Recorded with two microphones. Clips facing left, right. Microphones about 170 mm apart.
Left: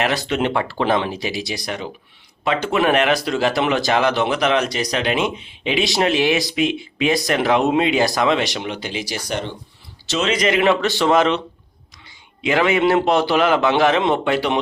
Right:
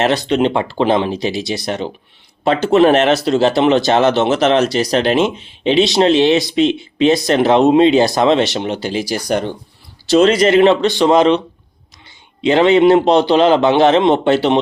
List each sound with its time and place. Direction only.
0.0 s speech: 20° right (ahead or behind); by 9.6 s 45° right (ahead or behind)
10.2 s speech: 35° right (ahead or behind)